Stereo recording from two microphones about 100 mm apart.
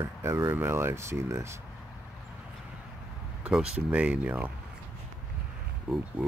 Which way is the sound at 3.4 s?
10° right (ahead or behind).